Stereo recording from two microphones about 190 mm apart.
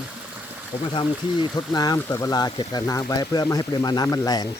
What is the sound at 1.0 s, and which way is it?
Speech, 20° left (ahead or behind).